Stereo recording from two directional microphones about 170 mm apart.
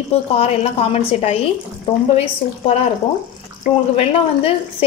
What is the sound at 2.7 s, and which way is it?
Speech, 40° left (ahead or behind).